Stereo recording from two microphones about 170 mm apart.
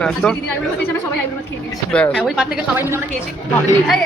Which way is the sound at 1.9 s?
5° left (ahead or behind).